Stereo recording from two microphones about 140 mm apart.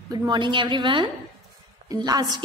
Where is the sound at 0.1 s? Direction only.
30° right (ahead or behind).